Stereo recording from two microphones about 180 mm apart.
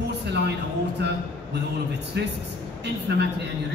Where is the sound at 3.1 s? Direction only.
65° right (ahead or behind).